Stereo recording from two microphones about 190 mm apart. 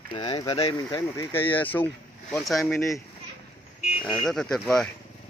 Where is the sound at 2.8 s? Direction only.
15° left (ahead or behind).